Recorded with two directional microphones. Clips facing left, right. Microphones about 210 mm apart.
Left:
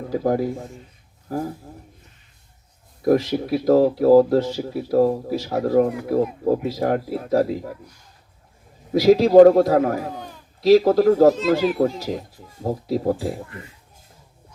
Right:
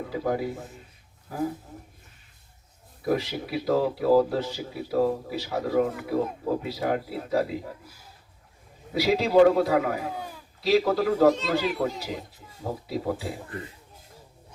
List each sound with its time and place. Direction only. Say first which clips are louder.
0.1 s speech: left 7 dB; 40° left (ahead or behind)
3.0 s speech: left 8 dB; 40° left (ahead or behind)
8.9 s speech: left 9 dB; 40° left (ahead or behind)